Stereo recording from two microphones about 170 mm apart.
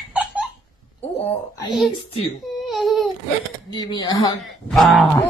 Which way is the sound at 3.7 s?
25° left (ahead or behind).